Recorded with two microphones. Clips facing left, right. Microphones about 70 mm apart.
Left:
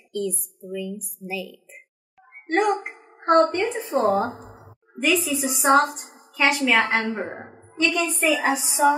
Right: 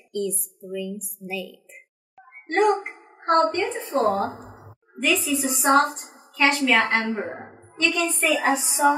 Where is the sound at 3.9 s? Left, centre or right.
Centre.